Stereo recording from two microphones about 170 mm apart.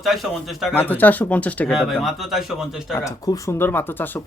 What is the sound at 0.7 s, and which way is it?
A man's voice, 10° left (ahead or behind).